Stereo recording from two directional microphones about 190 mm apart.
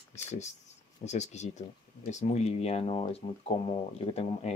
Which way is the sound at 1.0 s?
35° left (ahead or behind).